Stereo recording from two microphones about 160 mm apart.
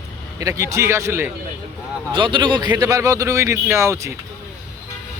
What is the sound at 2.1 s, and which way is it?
A man's voice, 30° right (ahead or behind).